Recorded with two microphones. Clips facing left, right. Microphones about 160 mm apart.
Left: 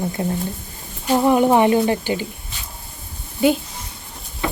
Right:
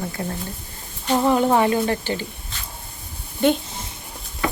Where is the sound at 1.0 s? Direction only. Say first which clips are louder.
Left 3 dB; 10° left (ahead or behind).